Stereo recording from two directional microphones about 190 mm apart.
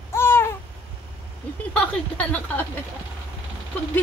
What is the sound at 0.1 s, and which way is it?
Babbling, 10° left (ahead or behind).